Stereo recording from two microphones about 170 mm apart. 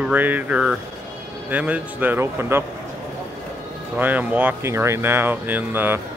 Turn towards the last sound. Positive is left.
turn(degrees=-10)  # may be behind; listen again after turning